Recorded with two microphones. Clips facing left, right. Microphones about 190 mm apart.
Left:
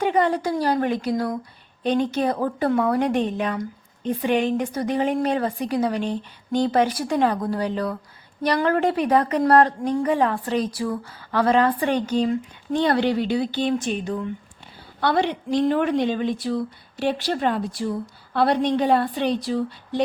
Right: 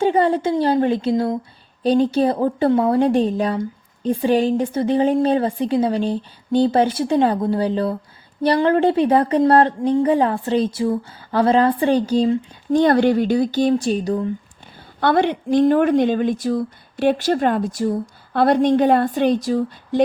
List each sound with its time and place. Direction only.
0.0 s a woman's voice: 30° right (ahead or behind)
12.7 s speech: 45° right (ahead or behind)
15.0 s speech: 55° right (ahead or behind)